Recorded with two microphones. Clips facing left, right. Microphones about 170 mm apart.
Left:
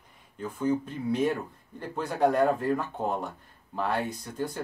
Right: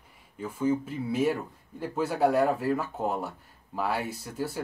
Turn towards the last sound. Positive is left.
turn(degrees=-5)  # may be behind; listen again after turning